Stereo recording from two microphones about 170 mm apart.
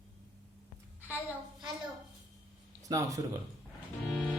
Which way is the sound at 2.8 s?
20° right (ahead or behind).